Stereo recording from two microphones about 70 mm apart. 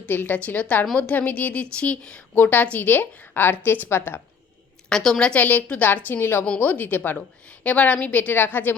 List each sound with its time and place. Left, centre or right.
0.0 s a woman's voice: left
4.9 s a woman's voice: centre; by 7.2 s left
7.2 s a woman's voice: centre